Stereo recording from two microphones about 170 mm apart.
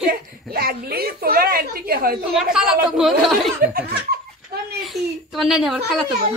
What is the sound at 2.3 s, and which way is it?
Speech, 5° right (ahead or behind).